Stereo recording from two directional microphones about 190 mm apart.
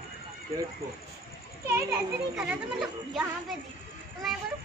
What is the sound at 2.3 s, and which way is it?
A woman's voice, 5° right (ahead or behind).